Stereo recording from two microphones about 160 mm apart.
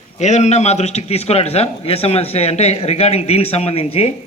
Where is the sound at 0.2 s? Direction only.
45° left (ahead or behind).